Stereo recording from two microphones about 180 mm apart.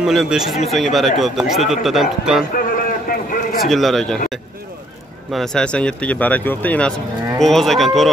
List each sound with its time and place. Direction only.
0.0 s speech: 5° right (ahead or behind)
2.5 s a sound: 50° left (ahead or behind)
3.6 s speech: centre (ahead or behind)
5.3 s speech: 5° left (ahead or behind)